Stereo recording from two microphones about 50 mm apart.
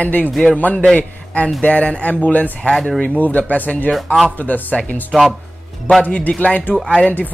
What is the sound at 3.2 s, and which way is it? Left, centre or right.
Speech, left.